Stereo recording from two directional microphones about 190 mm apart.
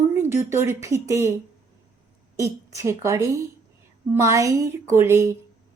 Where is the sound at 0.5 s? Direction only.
15° right (ahead or behind).